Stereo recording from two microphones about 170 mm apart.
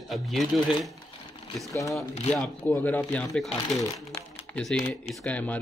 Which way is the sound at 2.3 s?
10° left (ahead or behind).